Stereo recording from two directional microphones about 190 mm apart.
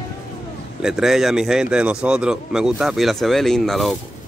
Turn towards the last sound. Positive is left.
turn(degrees=0)  # may be behind; listen again after turning